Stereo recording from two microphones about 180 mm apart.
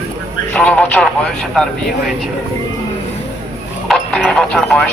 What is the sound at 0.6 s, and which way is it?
Speech, 5° left (ahead or behind).